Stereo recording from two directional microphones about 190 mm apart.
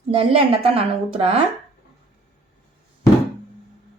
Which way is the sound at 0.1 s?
30° right (ahead or behind).